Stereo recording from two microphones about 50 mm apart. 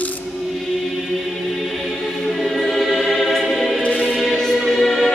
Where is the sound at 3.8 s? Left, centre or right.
Left.